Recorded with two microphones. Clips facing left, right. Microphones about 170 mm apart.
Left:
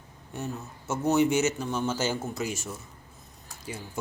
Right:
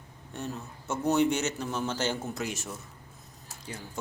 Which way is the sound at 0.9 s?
5° left (ahead or behind).